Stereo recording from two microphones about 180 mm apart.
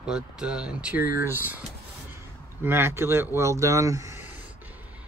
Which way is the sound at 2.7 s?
15° right (ahead or behind).